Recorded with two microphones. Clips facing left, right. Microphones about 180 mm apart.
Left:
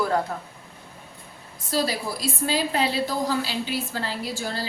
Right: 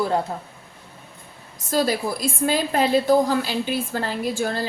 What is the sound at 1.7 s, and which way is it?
A woman's voice, 50° right (ahead or behind).